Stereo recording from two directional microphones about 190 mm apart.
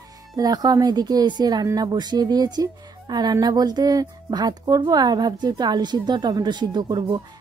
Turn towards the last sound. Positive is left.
turn(degrees=-20)  # may be behind; listen again after turning